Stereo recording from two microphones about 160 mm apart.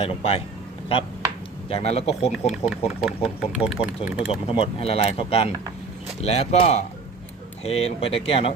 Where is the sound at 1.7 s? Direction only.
40° left (ahead or behind).